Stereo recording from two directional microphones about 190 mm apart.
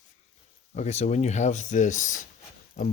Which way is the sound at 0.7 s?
35° left (ahead or behind).